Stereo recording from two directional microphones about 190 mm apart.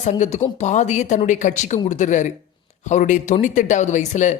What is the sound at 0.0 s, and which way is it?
Speech, 40° left (ahead or behind).